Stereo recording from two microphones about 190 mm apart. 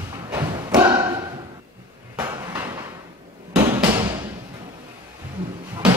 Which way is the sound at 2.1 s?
15° right (ahead or behind).